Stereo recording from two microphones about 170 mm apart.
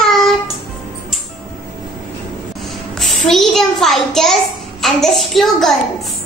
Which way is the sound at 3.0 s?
Centre (ahead or behind).